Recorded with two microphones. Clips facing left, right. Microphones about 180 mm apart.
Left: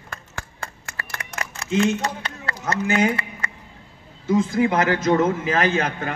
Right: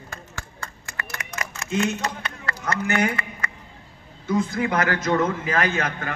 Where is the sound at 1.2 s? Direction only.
30° left (ahead or behind).